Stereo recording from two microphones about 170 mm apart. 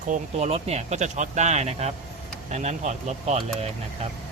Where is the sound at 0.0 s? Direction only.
45° right (ahead or behind).